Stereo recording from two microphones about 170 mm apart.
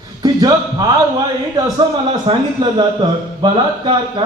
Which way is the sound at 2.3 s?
30° right (ahead or behind).